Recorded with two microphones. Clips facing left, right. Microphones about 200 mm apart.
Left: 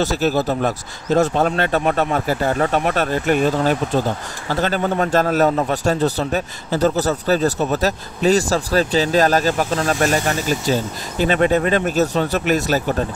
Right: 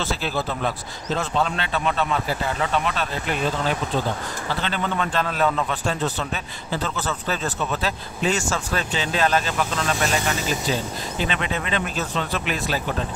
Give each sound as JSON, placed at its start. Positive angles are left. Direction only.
{"t": 0.0, "sound": "a man's voice", "side_deg": 40}